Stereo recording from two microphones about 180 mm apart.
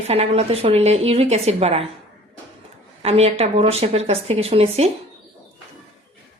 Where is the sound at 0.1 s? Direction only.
35° right (ahead or behind).